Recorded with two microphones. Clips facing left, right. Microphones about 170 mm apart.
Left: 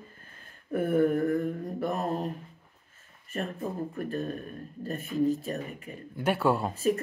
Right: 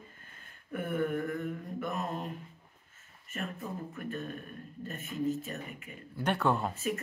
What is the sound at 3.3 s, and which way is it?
Speech, 35° left (ahead or behind).